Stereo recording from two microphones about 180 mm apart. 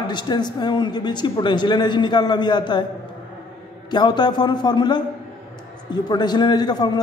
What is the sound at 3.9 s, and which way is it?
A man's voice, 25° left (ahead or behind).